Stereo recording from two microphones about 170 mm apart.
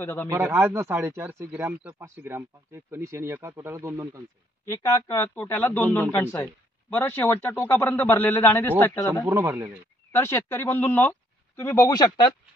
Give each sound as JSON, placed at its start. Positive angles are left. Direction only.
{"t": 0.0, "sound": "speech", "side_deg": 15}
{"t": 0.3, "sound": "speech", "side_deg": -15}
{"t": 4.6, "sound": "speech", "side_deg": 15}
{"t": 9.2, "sound": "speech", "side_deg": -20}
{"t": 10.1, "sound": "speech", "side_deg": 15}